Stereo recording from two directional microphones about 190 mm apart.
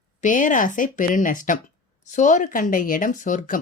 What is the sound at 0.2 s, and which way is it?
Speech, 45° left (ahead or behind).